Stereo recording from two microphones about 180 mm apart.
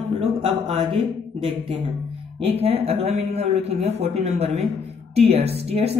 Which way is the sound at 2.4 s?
35° right (ahead or behind).